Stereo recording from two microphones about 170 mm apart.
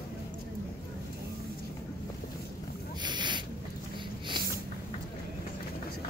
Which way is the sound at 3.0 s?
25° right (ahead or behind).